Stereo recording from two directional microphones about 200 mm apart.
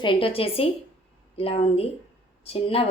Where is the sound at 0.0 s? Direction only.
25° left (ahead or behind).